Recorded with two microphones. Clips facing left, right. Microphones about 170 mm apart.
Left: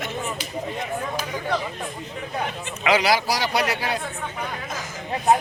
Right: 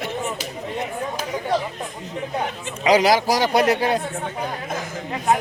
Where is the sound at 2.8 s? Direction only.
40° right (ahead or behind).